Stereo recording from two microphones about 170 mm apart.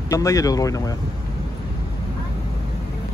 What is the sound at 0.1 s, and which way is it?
Speech, 20° left (ahead or behind).